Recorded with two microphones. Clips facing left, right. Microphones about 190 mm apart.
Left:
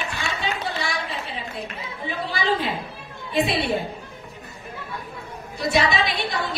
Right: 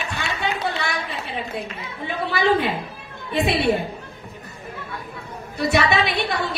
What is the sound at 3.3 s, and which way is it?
Speech, 70° right (ahead or behind).